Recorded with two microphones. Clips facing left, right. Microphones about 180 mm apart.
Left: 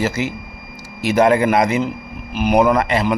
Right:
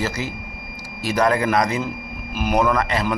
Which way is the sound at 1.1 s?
25° left (ahead or behind).